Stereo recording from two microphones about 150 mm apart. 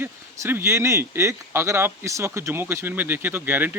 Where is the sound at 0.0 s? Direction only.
15° right (ahead or behind).